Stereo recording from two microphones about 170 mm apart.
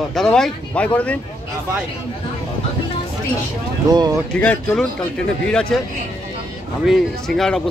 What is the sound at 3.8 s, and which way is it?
Speech, 20° right (ahead or behind).